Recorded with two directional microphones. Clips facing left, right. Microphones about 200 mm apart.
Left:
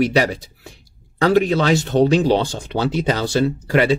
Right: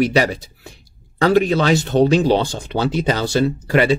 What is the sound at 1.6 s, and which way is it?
Speech, 5° right (ahead or behind).